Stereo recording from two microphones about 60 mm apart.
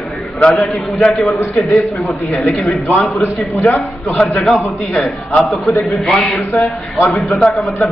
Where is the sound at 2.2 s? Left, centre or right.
Left.